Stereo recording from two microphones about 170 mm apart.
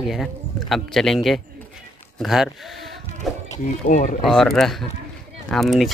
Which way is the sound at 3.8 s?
60° left (ahead or behind).